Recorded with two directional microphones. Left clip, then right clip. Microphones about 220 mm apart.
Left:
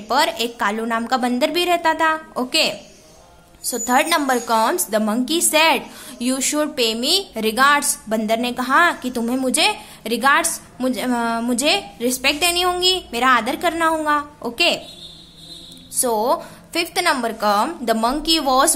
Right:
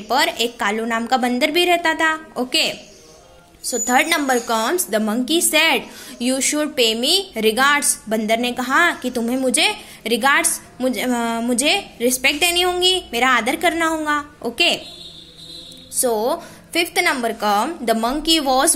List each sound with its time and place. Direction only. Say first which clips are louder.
0.1 s a woman's voice: even; centre (ahead or behind)
3.7 s a woman's voice: even; centre (ahead or behind)
16.0 s a woman's voice: left 1 dB; centre (ahead or behind)